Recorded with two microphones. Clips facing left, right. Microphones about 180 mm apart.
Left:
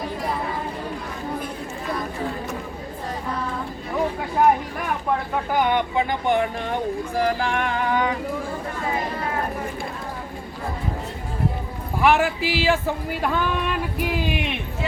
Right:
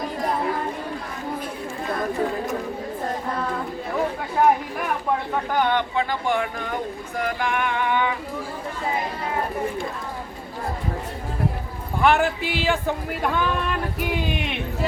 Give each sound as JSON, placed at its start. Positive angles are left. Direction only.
{"t": 5.5, "sound": "speech", "side_deg": 15}
{"t": 7.2, "sound": "music", "side_deg": 35}
{"t": 12.0, "sound": "speech", "side_deg": 0}